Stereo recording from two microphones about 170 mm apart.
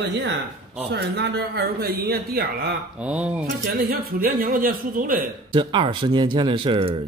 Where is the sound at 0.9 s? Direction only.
75° right (ahead or behind).